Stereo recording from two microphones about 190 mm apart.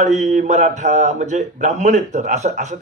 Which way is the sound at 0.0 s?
40° right (ahead or behind).